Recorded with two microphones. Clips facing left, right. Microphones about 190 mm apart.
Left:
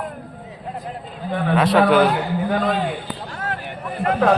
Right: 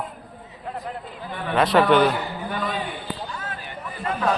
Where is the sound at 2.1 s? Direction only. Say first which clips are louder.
Left 7 dB; 55° left (ahead or behind).